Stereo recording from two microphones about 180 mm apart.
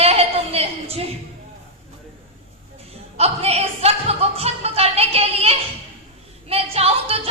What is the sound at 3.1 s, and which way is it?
Music, 35° right (ahead or behind).